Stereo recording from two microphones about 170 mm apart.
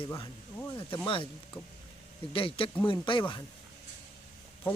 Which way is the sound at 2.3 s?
30° left (ahead or behind).